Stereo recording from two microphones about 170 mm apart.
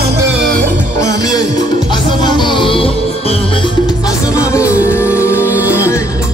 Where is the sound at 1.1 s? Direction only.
20° left (ahead or behind).